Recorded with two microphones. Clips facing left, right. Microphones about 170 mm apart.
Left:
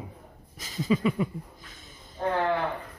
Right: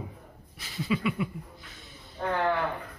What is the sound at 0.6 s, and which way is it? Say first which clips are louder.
Speech: left 4 dB; 40° left (ahead or behind).